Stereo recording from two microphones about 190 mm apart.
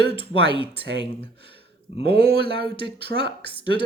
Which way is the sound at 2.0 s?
55° right (ahead or behind).